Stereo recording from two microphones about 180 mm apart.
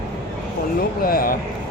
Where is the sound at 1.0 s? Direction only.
55° left (ahead or behind).